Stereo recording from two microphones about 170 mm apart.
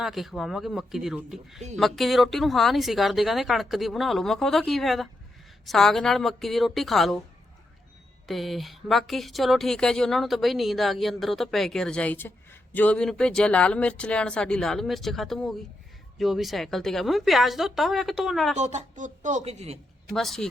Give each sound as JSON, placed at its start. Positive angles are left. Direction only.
{"t": 0.0, "sound": "a woman's voice", "side_deg": 0}
{"t": 8.3, "sound": "a woman's voice", "side_deg": 0}
{"t": 18.5, "sound": "speech", "side_deg": -45}
{"t": 20.1, "sound": "a woman's voice", "side_deg": 0}